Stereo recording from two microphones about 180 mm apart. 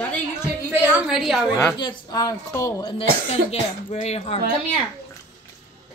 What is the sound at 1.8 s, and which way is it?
A woman's voice, 25° left (ahead or behind).